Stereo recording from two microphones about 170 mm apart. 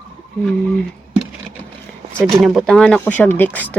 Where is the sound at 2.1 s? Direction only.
Centre (ahead or behind).